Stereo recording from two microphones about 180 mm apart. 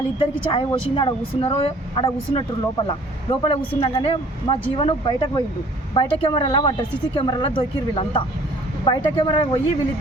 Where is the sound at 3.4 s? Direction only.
30° left (ahead or behind).